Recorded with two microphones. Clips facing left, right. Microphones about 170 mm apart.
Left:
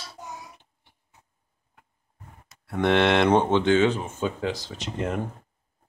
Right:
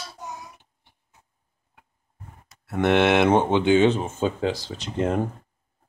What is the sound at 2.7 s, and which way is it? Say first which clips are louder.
Speech: right 2 dB; 5° right (ahead or behind).